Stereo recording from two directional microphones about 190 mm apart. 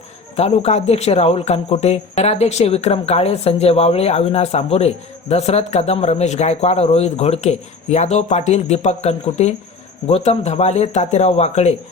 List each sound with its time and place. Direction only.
0.3 s speech: 35° left (ahead or behind)